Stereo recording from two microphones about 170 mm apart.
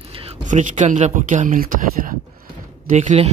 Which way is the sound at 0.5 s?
45° right (ahead or behind).